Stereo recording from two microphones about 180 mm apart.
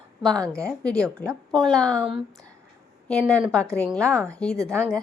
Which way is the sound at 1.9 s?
25° right (ahead or behind).